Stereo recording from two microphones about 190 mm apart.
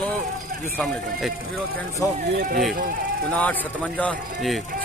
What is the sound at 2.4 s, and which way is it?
Speech, 50° right (ahead or behind).